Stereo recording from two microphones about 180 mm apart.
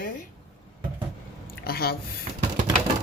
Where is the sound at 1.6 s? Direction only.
55° left (ahead or behind).